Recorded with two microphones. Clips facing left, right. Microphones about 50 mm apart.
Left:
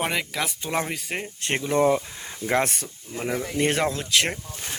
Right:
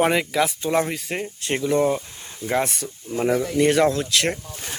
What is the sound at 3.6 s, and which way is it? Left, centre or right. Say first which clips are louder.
Speech: right 5 dB; left.